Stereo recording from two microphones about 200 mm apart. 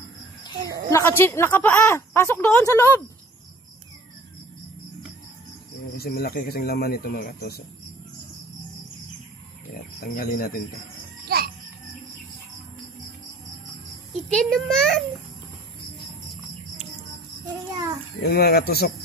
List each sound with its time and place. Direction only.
0.8 s speech: 15° left (ahead or behind)
5.9 s speech: 50° left (ahead or behind)
10.1 s speech: 45° left (ahead or behind)
11.2 s music: 50° right (ahead or behind)
14.3 s a child's voice: 5° left (ahead or behind)
18.2 s speech: 50° left (ahead or behind)